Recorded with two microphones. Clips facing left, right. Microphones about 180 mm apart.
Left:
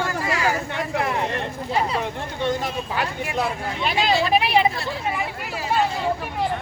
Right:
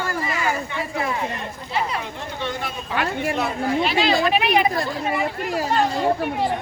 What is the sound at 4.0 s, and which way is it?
Speech, 40° left (ahead or behind).